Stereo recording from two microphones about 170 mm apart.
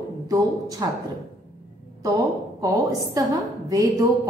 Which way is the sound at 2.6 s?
20° right (ahead or behind).